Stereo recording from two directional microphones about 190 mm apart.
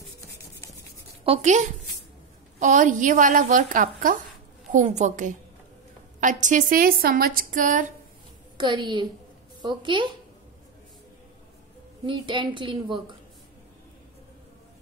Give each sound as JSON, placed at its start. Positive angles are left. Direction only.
{"t": 1.2, "sound": "a woman's voice", "side_deg": -35}
{"t": 8.5, "sound": "a woman's voice", "side_deg": -25}
{"t": 12.1, "sound": "a woman's voice", "side_deg": -25}